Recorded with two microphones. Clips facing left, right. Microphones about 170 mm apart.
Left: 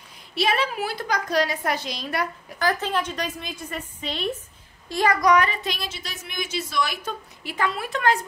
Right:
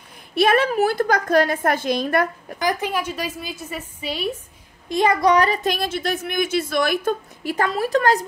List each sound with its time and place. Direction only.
0.3 s speech: 55° right (ahead or behind)
2.6 s a woman's voice: 15° right (ahead or behind)
4.8 s speech: 20° right (ahead or behind); by 8.2 s 40° right (ahead or behind)